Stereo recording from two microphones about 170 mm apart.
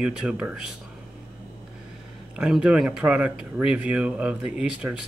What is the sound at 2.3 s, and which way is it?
Speech, 5° right (ahead or behind).